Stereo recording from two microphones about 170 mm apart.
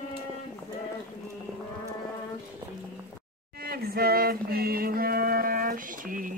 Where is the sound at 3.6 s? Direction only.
65° right (ahead or behind).